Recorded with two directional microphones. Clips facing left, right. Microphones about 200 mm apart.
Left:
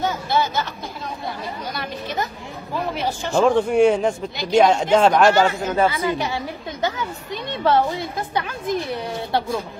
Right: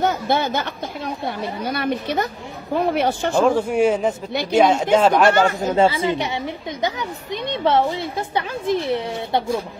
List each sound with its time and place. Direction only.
0.0 s a woman's voice: 55° right (ahead or behind)
3.3 s a man's voice: 5° right (ahead or behind)
4.3 s a woman's voice: 60° right (ahead or behind)
4.6 s a man's voice: 5° right (ahead or behind)
5.6 s a woman's voice: 30° right (ahead or behind)